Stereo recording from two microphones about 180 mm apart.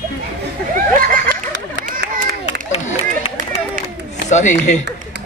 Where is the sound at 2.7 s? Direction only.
35° left (ahead or behind).